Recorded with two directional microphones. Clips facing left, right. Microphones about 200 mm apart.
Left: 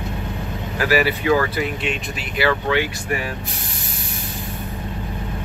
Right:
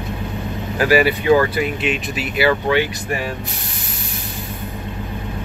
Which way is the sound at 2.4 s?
15° right (ahead or behind).